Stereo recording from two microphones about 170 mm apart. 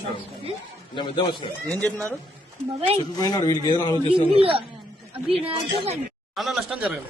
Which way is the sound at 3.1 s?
20° left (ahead or behind).